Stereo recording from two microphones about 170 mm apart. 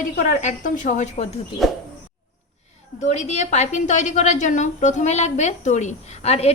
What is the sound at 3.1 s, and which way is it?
A woman's voice, 40° left (ahead or behind).